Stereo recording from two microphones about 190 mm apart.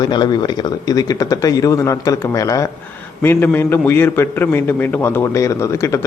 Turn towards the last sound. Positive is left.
turn(degrees=15)  # may be behind; listen again after turning